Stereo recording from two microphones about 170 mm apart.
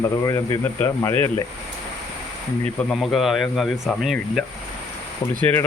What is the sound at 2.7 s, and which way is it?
Speech, 5° left (ahead or behind).